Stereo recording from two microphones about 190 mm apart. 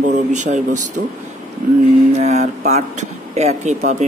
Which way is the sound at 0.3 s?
40° right (ahead or behind).